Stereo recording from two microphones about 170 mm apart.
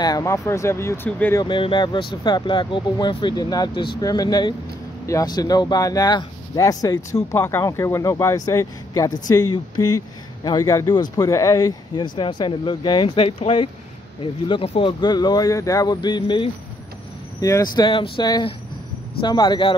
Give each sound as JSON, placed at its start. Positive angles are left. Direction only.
{"t": 0.0, "sound": "speech", "side_deg": 20}
{"t": 1.4, "sound": "speech", "side_deg": 30}